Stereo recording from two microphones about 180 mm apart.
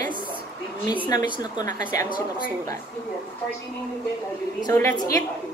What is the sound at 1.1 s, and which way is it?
Speech, 20° left (ahead or behind).